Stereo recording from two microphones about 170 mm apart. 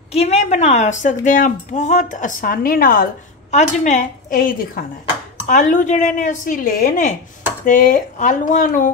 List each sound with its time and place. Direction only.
0.1 s a woman's voice: 40° left (ahead or behind); by 3.1 s 55° left (ahead or behind)
3.5 s a woman's voice: 45° left (ahead or behind)